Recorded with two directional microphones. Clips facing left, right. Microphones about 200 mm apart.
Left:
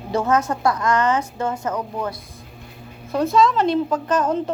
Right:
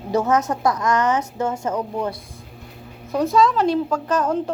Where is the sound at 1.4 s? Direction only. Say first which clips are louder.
Right 1 dB; 10° right (ahead or behind).